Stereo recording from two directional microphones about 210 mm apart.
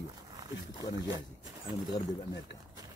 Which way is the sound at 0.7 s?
20° left (ahead or behind).